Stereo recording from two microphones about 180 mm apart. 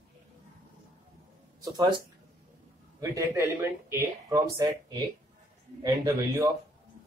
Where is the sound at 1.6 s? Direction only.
20° right (ahead or behind).